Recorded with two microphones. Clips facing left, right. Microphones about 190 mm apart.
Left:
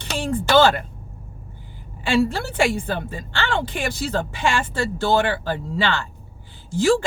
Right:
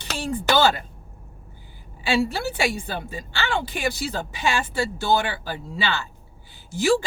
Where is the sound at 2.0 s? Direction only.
55° left (ahead or behind).